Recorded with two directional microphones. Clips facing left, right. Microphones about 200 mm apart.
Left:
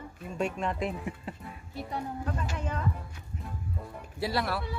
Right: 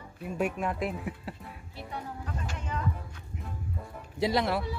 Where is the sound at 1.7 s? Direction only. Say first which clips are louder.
Left 4 dB; 45° left (ahead or behind).